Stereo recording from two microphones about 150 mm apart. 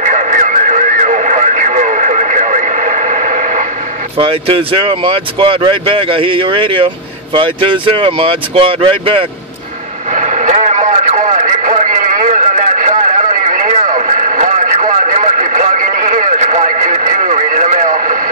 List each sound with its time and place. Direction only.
0.0 s radio: 55° right (ahead or behind)
4.2 s speech: 40° right (ahead or behind)
10.1 s radio: 55° right (ahead or behind)